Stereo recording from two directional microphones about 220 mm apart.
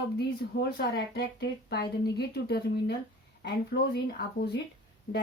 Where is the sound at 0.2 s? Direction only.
50° left (ahead or behind).